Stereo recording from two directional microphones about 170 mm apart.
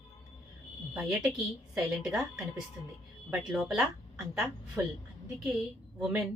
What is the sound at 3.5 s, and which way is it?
Speech, centre (ahead or behind).